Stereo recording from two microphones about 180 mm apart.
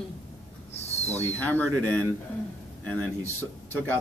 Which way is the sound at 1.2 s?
10° left (ahead or behind).